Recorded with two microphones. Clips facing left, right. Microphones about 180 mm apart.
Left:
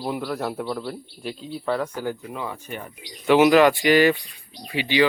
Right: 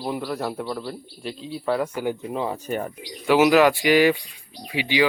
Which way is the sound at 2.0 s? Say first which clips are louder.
Right 4 dB; 20° right (ahead or behind).